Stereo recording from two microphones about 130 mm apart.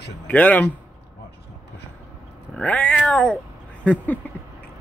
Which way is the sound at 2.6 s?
10° left (ahead or behind).